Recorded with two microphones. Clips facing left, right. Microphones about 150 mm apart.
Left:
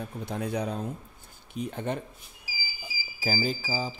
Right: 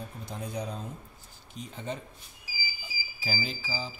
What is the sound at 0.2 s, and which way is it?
Speech, 65° left (ahead or behind).